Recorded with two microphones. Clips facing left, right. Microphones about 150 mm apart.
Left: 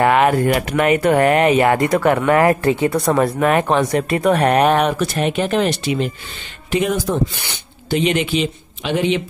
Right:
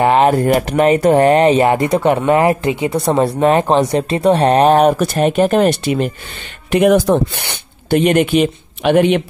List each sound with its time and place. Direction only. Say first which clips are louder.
0.0 s speech: right 2 dB; 30° right (ahead or behind)
3.1 s speech: right 5 dB; 25° right (ahead or behind); by 6.1 s 50° right (ahead or behind)
6.7 s speech: right 7 dB; 65° right (ahead or behind)